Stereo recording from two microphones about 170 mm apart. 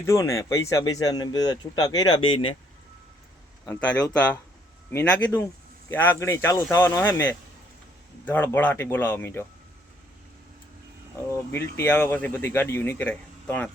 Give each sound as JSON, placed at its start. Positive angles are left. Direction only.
{"t": 0.0, "sound": "speech", "side_deg": 15}
{"t": 3.8, "sound": "speech", "side_deg": 5}
{"t": 11.3, "sound": "speech", "side_deg": 15}